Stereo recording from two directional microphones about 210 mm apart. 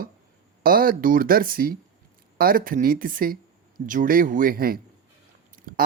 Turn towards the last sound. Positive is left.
turn(degrees=-40)  # may be behind; listen again after turning